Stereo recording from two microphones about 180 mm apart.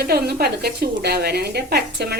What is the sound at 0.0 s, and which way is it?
A woman's voice, 60° right (ahead or behind).